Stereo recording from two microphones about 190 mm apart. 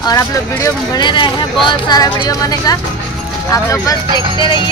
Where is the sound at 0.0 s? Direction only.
20° left (ahead or behind).